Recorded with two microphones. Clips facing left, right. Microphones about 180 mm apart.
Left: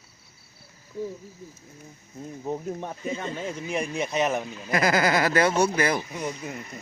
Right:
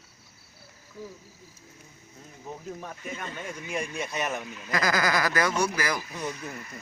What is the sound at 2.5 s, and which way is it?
Speech, 30° left (ahead or behind).